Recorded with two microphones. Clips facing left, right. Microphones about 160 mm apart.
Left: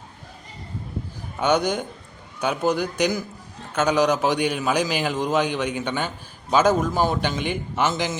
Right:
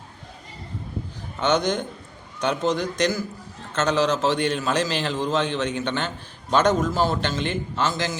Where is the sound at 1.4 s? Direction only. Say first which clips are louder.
Left 1 dB; 10° left (ahead or behind).